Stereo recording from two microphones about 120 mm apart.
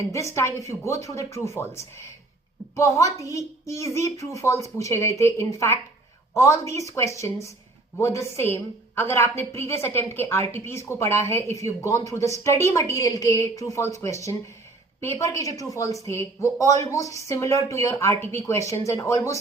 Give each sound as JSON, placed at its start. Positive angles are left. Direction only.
{"t": 0.0, "sound": "a woman's voice", "side_deg": 25}